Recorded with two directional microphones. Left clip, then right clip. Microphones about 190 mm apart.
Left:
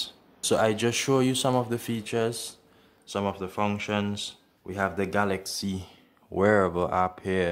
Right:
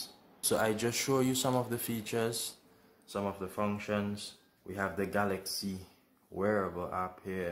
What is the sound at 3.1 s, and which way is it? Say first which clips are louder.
Speech: left 7 dB; 30° left (ahead or behind).